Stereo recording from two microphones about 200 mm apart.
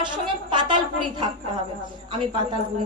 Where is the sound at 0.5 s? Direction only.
25° right (ahead or behind).